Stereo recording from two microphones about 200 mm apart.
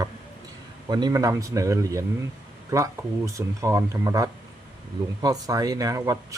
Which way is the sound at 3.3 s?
15° right (ahead or behind).